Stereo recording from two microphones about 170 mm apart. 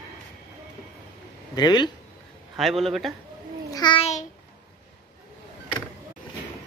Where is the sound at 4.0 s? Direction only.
45° left (ahead or behind).